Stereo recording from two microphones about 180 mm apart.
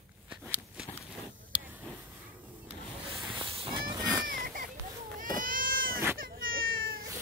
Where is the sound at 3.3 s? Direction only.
30° right (ahead or behind).